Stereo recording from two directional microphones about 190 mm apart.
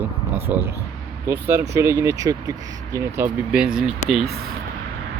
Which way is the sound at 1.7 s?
15° right (ahead or behind).